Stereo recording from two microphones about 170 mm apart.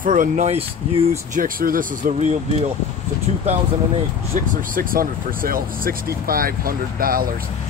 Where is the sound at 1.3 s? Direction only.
55° right (ahead or behind).